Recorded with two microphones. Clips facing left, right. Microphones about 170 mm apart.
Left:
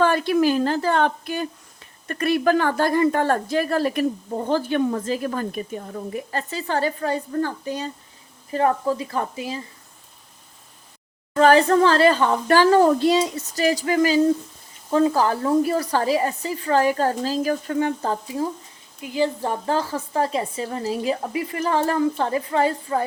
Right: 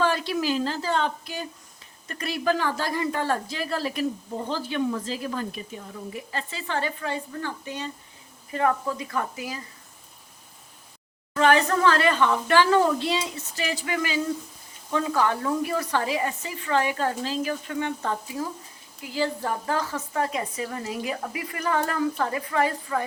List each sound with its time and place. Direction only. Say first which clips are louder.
0.0 s a woman's voice: left 6 dB; 55° left (ahead or behind); by 9.6 s 30° left (ahead or behind)
11.3 s a woman's voice: left 6 dB; 35° left (ahead or behind)
19.0 s a woman's voice: left 4 dB; 20° left (ahead or behind)